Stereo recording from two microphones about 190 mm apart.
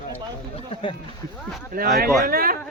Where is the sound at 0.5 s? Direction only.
30° left (ahead or behind).